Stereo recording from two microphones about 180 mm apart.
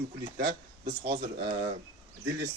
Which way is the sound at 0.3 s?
50° right (ahead or behind).